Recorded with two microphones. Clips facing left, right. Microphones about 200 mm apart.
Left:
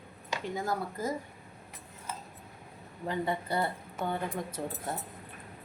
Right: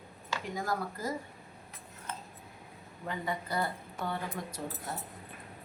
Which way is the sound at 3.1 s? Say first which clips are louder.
Left 4 dB; 30° left (ahead or behind).